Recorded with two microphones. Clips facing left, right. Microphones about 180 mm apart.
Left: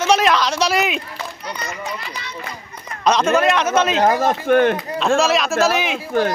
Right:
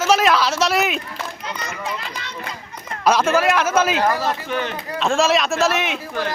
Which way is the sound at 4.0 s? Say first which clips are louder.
Left 4 dB; 50° left (ahead or behind).